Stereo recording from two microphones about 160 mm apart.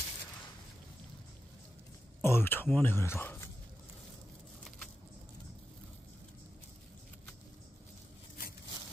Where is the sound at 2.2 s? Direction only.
15° left (ahead or behind).